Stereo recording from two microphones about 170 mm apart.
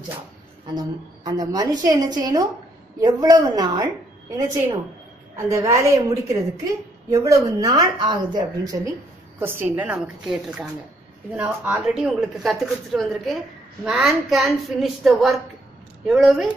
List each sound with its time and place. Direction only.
0.7 s a woman's voice: 25° right (ahead or behind)
5.5 s a woman's voice: 15° right (ahead or behind)
9.4 s speech: 10° right (ahead or behind)